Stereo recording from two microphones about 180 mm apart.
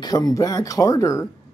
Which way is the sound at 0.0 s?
20° left (ahead or behind).